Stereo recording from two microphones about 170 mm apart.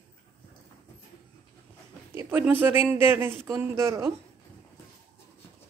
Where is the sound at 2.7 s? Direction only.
10° right (ahead or behind).